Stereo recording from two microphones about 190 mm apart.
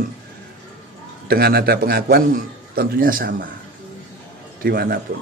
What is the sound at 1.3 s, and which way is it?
A man's voice, 55° right (ahead or behind).